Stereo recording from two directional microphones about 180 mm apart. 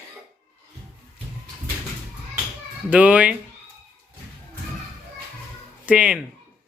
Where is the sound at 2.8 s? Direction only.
10° right (ahead or behind).